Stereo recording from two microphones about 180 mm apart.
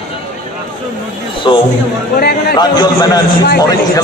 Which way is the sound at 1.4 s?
25° left (ahead or behind).